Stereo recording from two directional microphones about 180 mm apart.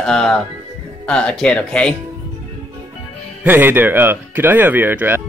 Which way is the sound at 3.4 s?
10° right (ahead or behind).